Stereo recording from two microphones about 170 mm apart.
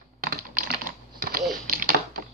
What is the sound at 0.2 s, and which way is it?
Typing, 55° right (ahead or behind).